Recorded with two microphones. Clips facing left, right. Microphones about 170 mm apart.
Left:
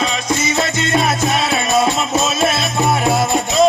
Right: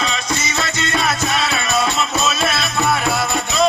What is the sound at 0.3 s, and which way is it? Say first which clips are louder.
Music: left 5 dB; 50° left (ahead or behind).